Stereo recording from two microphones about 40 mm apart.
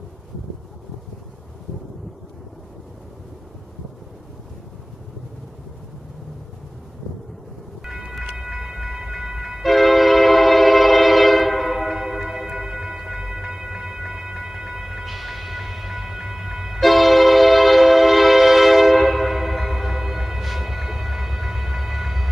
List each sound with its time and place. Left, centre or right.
8.4 s train: centre
9.6 s train: centre